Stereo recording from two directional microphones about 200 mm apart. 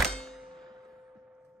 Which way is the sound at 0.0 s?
Centre (ahead or behind).